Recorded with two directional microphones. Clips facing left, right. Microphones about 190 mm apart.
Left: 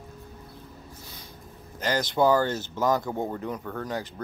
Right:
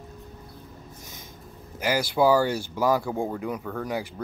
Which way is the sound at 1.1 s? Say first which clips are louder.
Right 1 dB; 15° right (ahead or behind).